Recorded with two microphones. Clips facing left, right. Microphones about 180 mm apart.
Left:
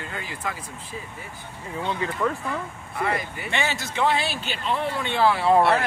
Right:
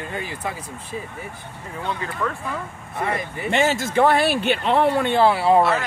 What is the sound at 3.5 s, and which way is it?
Speech, 45° right (ahead or behind).